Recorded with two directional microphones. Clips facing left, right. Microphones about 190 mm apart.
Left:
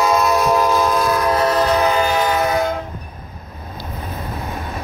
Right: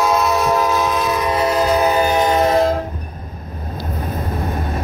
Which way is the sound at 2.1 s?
20° right (ahead or behind).